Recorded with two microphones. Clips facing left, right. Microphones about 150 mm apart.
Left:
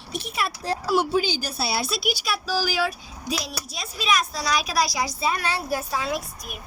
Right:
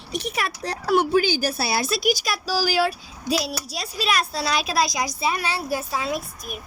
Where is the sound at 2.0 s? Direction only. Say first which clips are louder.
Right 4 dB; 40° right (ahead or behind); by 5.5 s 10° right (ahead or behind).